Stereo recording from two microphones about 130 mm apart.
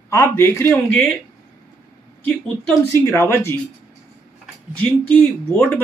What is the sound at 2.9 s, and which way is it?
Speech, 20° left (ahead or behind).